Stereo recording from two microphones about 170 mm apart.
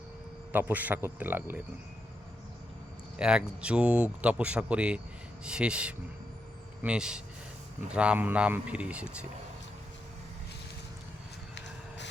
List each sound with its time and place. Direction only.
0.5 s speech: 10° right (ahead or behind)
3.2 s speech: 5° right (ahead or behind)